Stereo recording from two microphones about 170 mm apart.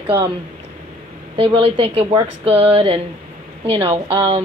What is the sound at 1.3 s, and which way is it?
Speech, 35° right (ahead or behind).